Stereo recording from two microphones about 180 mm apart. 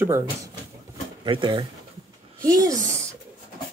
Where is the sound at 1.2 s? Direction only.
25° right (ahead or behind).